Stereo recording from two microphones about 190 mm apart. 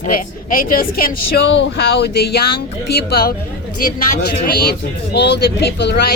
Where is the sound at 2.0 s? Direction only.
55° left (ahead or behind).